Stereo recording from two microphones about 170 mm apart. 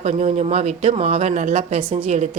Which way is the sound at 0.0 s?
40° right (ahead or behind).